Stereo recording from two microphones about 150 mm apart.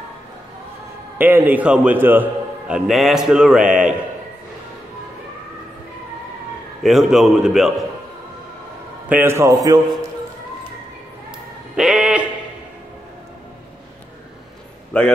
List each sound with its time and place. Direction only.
1.1 s a man's voice: 15° right (ahead or behind)
2.7 s a man's voice: centre (ahead or behind)
6.8 s a man's voice: centre (ahead or behind)
9.1 s a man's voice: 15° right (ahead or behind)
11.7 s music: 5° right (ahead or behind)
14.9 s a man's voice: 5° left (ahead or behind)